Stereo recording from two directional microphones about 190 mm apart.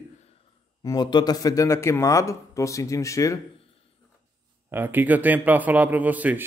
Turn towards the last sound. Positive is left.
turn(degrees=-10)  # may be behind; listen again after turning